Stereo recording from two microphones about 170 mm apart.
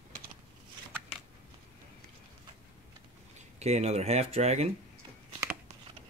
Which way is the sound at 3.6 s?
40° right (ahead or behind).